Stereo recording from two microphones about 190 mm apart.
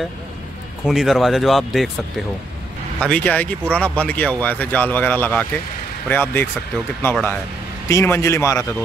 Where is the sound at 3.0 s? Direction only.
5° left (ahead or behind).